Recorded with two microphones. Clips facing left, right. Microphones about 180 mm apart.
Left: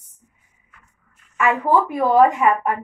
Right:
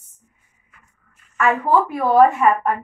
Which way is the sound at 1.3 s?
15° left (ahead or behind).